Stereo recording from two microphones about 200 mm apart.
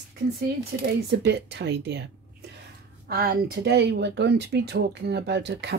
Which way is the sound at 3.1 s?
50° right (ahead or behind).